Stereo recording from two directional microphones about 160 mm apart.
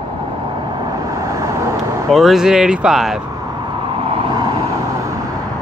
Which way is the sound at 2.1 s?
Centre (ahead or behind).